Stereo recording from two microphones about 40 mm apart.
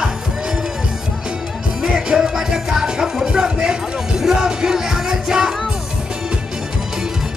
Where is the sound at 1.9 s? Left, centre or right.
Centre.